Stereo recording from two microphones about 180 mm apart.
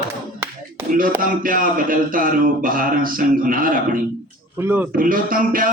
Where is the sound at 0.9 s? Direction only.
50° right (ahead or behind).